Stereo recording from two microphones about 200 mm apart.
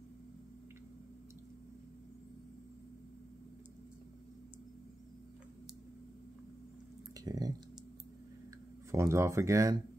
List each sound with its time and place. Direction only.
7.2 s speech: 20° right (ahead or behind)
8.9 s speech: 15° right (ahead or behind)